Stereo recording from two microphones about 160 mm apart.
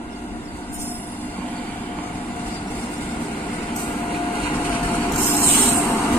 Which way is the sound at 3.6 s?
30° left (ahead or behind).